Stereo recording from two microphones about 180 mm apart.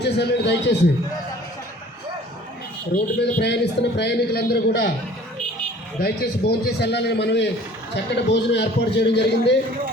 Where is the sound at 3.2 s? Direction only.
70° left (ahead or behind).